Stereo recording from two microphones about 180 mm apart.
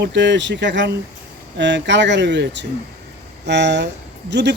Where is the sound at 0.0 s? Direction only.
80° right.